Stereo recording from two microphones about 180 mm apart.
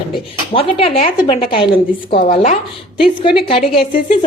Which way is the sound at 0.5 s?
30° left (ahead or behind).